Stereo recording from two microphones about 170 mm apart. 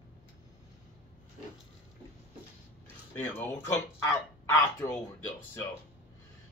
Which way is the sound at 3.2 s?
10° left (ahead or behind).